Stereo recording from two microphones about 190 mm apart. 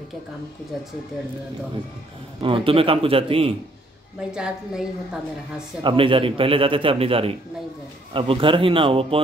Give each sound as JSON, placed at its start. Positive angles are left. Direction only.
{"t": 2.4, "sound": "speech", "side_deg": -25}
{"t": 4.3, "sound": "a woman's voice", "side_deg": -5}
{"t": 5.9, "sound": "speech", "side_deg": -25}